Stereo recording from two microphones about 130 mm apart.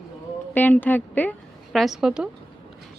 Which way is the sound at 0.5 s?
15° left (ahead or behind).